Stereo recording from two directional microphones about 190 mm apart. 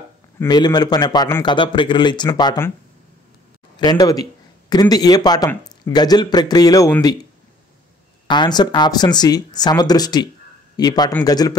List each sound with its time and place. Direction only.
0.4 s a man's voice: 20° left (ahead or behind)
3.8 s a man's voice: 20° left (ahead or behind)
8.3 s a man's voice: 25° left (ahead or behind)